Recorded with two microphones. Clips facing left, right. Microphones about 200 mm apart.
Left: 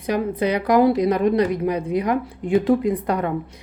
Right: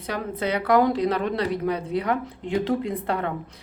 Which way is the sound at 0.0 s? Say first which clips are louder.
Left 6 dB; 15° left (ahead or behind).